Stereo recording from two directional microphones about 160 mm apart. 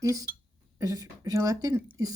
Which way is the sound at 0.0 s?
20° right (ahead or behind).